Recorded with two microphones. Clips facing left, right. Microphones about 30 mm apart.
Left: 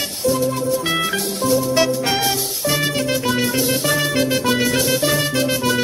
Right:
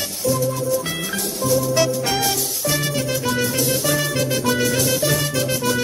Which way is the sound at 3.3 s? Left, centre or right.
Left.